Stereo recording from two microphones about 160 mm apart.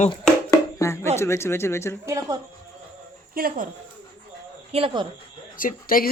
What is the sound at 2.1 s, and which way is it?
Speech, 20° right (ahead or behind).